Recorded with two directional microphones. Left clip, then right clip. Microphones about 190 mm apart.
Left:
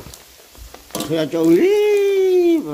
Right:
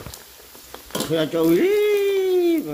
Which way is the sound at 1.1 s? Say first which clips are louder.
Left 3 dB; 15° left (ahead or behind).